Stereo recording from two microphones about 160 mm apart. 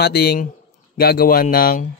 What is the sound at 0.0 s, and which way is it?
Speech, 80° left.